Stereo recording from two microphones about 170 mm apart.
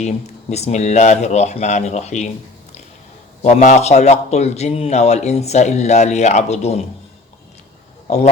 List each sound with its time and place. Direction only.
0.5 s a man's voice: 40° left (ahead or behind)
3.4 s a man's voice: 45° left (ahead or behind)